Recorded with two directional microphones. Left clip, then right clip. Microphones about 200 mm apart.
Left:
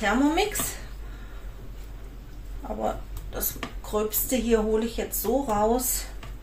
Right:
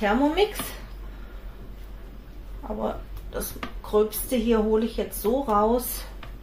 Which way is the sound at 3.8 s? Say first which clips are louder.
Right 5 dB; 15° right (ahead or behind).